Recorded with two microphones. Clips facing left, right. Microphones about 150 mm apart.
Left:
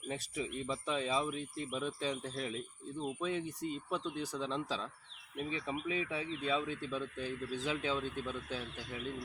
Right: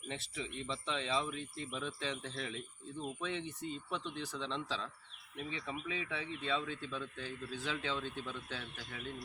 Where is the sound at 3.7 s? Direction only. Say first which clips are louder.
Left 3 dB; 5° left (ahead or behind).